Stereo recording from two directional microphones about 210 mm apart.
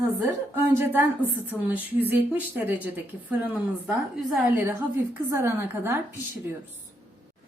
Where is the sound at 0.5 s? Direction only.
10° right (ahead or behind).